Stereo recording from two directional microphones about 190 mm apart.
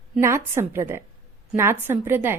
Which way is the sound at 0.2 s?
15° right (ahead or behind).